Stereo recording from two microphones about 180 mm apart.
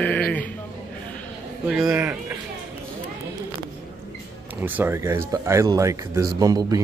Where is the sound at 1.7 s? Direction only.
5° right (ahead or behind).